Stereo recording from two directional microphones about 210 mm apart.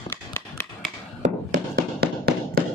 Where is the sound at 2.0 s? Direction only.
50° right (ahead or behind).